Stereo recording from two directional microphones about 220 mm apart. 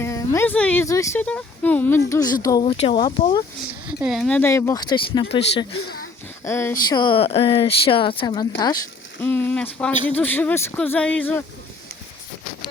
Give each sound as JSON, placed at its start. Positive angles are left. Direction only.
{"t": 0.0, "sound": "a sound", "side_deg": 15}
{"t": 0.3, "sound": "speech", "side_deg": 5}
{"t": 3.8, "sound": "speech", "side_deg": -5}
{"t": 6.4, "sound": "speech", "side_deg": 10}
{"t": 9.2, "sound": "speech", "side_deg": 5}